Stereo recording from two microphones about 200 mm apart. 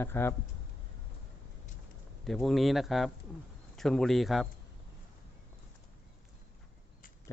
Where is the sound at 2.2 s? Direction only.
Centre (ahead or behind).